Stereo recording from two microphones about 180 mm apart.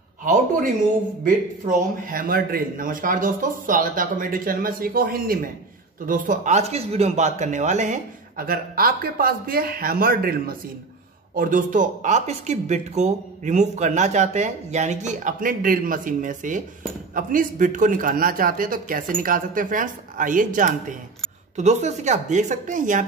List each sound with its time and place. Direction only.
0.2 s speech: 50° right (ahead or behind)